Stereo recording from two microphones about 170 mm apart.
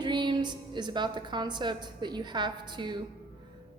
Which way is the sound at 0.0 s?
25° right (ahead or behind).